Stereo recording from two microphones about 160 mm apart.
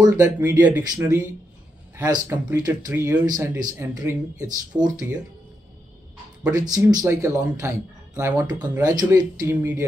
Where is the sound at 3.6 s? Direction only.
20° right (ahead or behind).